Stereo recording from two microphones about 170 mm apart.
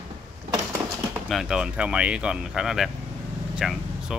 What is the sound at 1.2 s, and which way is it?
Speech, centre (ahead or behind).